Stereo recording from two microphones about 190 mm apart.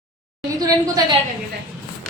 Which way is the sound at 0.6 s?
20° right (ahead or behind).